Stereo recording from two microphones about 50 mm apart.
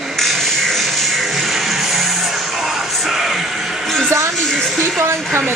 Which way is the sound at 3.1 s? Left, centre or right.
Centre.